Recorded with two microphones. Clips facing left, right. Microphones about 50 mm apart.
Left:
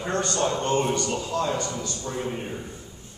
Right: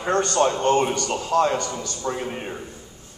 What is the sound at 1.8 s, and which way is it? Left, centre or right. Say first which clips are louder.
Speech: right 3 dB; right.